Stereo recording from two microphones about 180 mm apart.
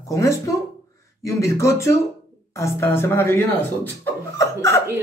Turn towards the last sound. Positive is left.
turn(degrees=15)  # may be behind; listen again after turning